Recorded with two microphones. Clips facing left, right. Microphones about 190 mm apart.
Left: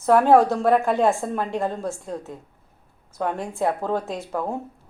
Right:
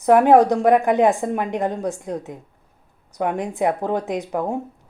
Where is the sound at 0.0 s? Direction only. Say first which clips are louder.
Right 3 dB; 15° right (ahead or behind).